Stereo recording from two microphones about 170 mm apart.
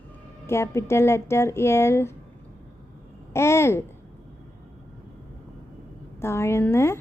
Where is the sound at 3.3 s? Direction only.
15° left (ahead or behind).